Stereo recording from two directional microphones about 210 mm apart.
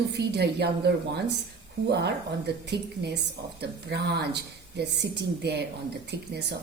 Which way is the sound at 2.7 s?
55° right (ahead or behind).